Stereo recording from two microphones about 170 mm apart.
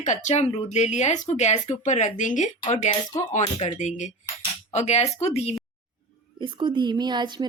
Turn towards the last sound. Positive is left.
turn(degrees=-25)  # may be behind; listen again after turning